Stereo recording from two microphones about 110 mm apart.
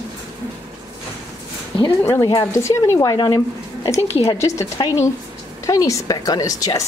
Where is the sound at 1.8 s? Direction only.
25° left (ahead or behind).